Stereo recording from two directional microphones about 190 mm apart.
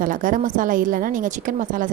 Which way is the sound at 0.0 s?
45° right (ahead or behind).